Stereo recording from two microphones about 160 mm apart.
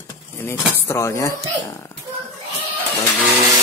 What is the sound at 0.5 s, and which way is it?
Speech, 15° left (ahead or behind).